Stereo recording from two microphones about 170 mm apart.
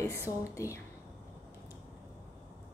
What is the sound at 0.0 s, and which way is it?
Speech, 15° left (ahead or behind).